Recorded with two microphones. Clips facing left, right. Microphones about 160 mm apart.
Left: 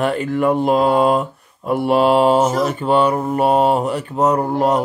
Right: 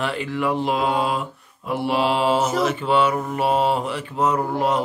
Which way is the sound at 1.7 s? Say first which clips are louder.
Left 7 dB; 50° left (ahead or behind).